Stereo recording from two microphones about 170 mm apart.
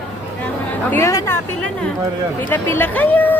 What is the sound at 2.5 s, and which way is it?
Speech, 10° left (ahead or behind).